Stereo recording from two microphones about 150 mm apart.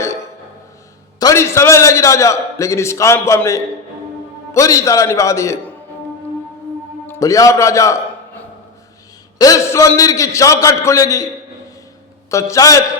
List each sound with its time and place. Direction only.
1.2 s a man's voice: 20° left (ahead or behind)
7.1 s a man's voice: 20° left (ahead or behind)
12.3 s a man's voice: 20° left (ahead or behind)